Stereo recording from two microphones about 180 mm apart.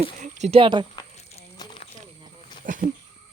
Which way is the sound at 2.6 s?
50° right (ahead or behind).